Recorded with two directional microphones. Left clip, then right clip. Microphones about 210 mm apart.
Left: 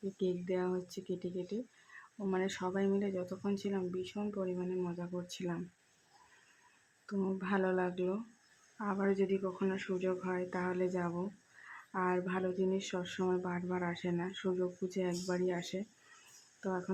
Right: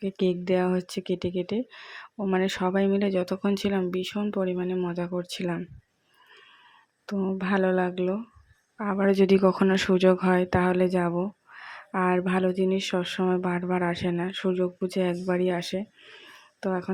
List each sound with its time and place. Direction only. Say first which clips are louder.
0.2 s speech: right 11 dB; 30° right (ahead or behind)
7.1 s speech: right 9 dB; 20° right (ahead or behind)